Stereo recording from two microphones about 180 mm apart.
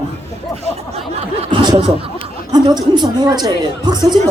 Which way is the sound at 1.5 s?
25° right (ahead or behind).